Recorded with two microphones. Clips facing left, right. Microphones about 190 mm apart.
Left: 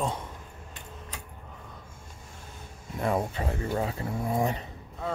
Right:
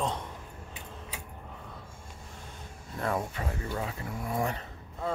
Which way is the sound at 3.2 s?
30° left (ahead or behind).